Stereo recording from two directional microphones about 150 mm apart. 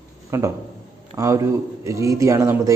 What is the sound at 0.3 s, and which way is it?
A man's voice, 20° right (ahead or behind).